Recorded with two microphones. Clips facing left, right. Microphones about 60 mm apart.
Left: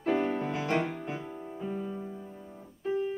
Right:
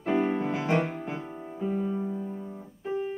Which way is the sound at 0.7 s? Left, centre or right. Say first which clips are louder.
Right 3 dB; centre.